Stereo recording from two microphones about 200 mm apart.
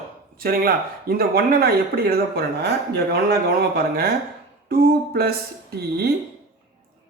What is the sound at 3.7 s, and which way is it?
Speech, 45° right (ahead or behind).